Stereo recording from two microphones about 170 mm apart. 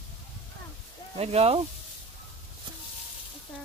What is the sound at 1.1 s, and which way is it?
Speech, 40° right (ahead or behind).